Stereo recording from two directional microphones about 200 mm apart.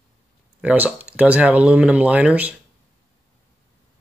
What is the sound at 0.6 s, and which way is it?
Speech, 5° right (ahead or behind).